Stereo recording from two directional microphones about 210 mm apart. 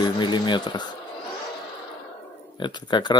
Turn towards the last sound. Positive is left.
turn(degrees=20)  # may be behind; listen again after turning